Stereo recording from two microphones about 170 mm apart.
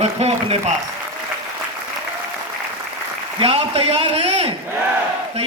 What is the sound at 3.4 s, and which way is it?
A man's voice, 35° right (ahead or behind).